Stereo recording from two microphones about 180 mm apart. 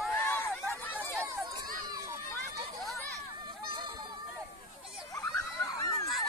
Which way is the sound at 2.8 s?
Centre (ahead or behind).